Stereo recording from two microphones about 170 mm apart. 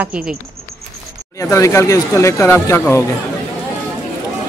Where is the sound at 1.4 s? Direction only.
20° left (ahead or behind).